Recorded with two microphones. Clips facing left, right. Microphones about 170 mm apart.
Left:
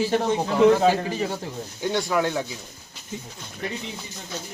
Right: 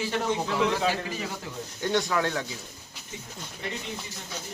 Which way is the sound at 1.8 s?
10° left (ahead or behind).